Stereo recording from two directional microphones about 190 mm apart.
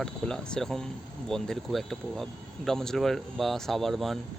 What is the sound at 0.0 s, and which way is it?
Speech, 5° left (ahead or behind).